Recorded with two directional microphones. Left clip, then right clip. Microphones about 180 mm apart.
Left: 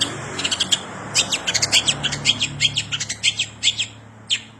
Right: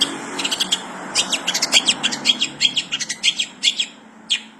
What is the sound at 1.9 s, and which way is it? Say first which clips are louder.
Bird: right 2 dB; 20° left (ahead or behind).